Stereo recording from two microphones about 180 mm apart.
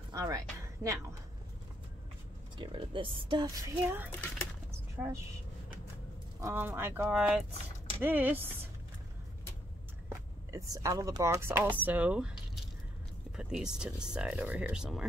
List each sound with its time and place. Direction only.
0.1 s music: 20° right (ahead or behind)
0.8 s speech: 15° right (ahead or behind)
2.5 s speech: 25° right (ahead or behind)
4.6 s a sound: 15° right (ahead or behind)
6.4 s speech: 10° right (ahead or behind)
10.0 s speech: 20° right (ahead or behind)